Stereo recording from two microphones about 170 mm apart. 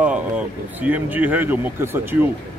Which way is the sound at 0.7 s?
10° right (ahead or behind).